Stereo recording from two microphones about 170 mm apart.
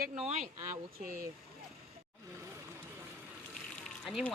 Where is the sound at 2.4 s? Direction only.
15° right (ahead or behind).